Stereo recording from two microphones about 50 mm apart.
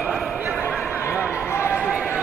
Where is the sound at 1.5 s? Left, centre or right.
Left.